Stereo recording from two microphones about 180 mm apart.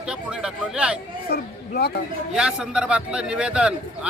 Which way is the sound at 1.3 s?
65° left (ahead or behind).